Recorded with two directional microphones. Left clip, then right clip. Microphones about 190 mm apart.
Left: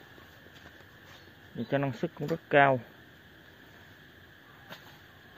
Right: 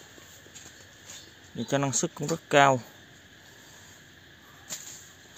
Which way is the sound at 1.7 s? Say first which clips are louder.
Right 3 dB; 25° right (ahead or behind).